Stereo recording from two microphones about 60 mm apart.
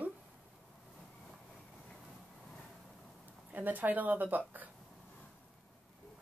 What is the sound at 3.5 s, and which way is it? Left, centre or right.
A woman's voice, right.